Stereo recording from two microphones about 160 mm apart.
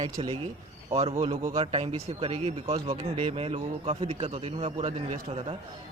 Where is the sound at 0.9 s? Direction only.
40° right (ahead or behind).